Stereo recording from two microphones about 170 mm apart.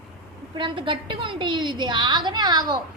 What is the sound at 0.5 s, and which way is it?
A woman's voice, 30° right (ahead or behind).